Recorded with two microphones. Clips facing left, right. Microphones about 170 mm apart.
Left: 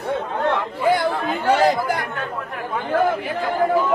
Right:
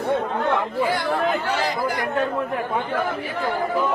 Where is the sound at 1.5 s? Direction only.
50° left (ahead or behind).